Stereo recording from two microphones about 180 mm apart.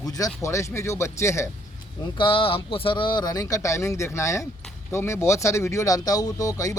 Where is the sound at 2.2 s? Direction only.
30° left (ahead or behind).